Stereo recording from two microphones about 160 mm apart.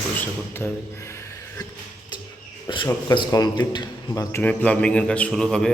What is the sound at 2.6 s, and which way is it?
Cricket, 30° left (ahead or behind).